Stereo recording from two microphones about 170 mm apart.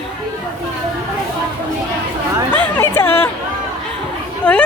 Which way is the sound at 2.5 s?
10° left (ahead or behind).